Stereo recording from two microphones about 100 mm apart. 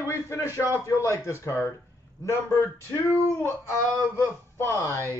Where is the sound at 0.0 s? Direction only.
30° left (ahead or behind).